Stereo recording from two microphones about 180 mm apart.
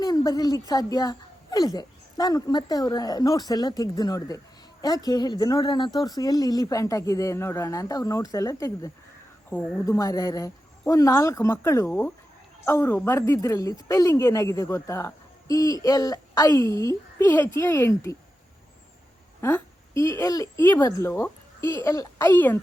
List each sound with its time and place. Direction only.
0.0 s a sound: 20° left (ahead or behind)
0.7 s a woman's voice: 20° left (ahead or behind)
19.4 s a woman's voice: 15° left (ahead or behind)